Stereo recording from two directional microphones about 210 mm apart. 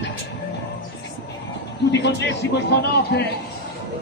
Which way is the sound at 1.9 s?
55° left (ahead or behind).